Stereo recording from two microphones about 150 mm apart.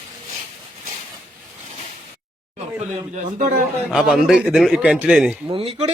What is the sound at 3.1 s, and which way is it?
Speech, 55° right (ahead or behind).